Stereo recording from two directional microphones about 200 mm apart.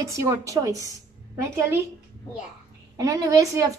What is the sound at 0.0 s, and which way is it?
Speech, 15° right (ahead or behind).